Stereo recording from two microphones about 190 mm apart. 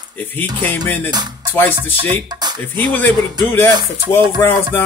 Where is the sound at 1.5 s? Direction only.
10° left (ahead or behind).